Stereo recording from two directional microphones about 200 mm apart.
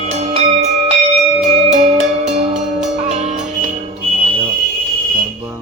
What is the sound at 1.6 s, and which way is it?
Music, 35° right (ahead or behind).